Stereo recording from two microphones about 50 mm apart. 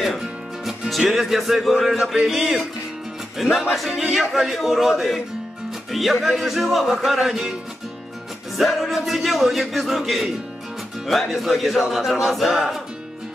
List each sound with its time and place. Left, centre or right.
0.2 s speech: centre
8.5 s speech: centre